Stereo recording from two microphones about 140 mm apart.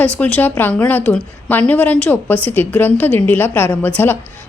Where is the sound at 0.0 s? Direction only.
10° left (ahead or behind).